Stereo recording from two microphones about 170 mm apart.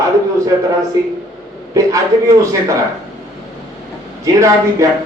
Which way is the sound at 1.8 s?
20° right (ahead or behind).